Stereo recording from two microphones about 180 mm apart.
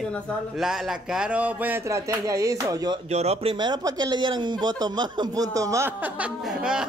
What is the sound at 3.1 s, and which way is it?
Speech, 35° right (ahead or behind).